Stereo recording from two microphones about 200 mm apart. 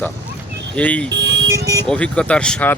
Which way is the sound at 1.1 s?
60° right (ahead or behind).